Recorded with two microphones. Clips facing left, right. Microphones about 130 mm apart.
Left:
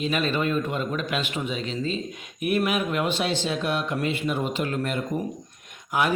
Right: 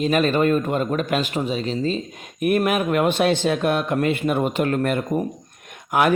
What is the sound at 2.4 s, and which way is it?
A man's voice, 50° right (ahead or behind).